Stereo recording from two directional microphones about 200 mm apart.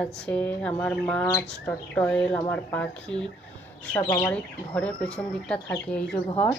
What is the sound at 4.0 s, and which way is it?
Speech, 20° left (ahead or behind).